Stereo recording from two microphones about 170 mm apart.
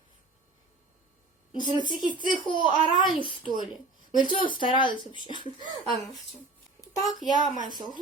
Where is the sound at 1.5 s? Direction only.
25° left (ahead or behind).